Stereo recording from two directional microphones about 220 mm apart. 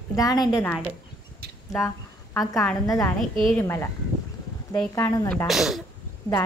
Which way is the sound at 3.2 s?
Centre (ahead or behind).